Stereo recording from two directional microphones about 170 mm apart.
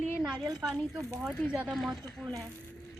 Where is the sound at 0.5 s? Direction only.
Centre (ahead or behind).